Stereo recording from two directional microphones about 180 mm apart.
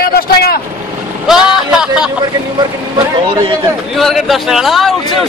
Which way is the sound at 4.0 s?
Centre (ahead or behind).